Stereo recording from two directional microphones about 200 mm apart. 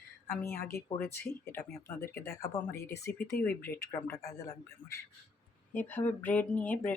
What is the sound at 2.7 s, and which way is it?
Speech, 50° left (ahead or behind).